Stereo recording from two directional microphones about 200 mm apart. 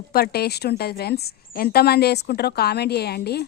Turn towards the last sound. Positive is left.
turn(degrees=55)  # may be behind; listen again after turning